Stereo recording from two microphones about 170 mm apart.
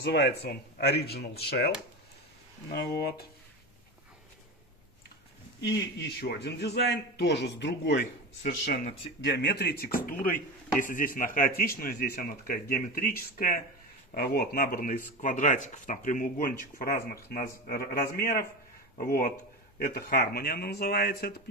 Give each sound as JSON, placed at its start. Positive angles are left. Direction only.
{"t": 0.0, "sound": "a man's voice", "side_deg": 75}
{"t": 5.6, "sound": "a man's voice", "side_deg": 80}
{"t": 14.1, "sound": "speech", "side_deg": 70}
{"t": 15.1, "sound": "speech", "side_deg": 45}